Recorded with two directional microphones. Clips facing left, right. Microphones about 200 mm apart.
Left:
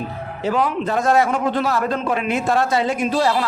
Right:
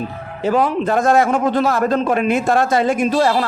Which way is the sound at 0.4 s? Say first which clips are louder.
Right 4 dB; 50° right (ahead or behind).